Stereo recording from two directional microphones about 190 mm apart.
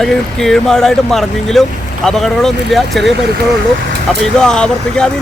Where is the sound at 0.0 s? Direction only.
Centre (ahead or behind).